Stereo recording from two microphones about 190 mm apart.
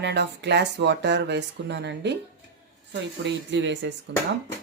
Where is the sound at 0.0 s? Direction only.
60° right (ahead or behind).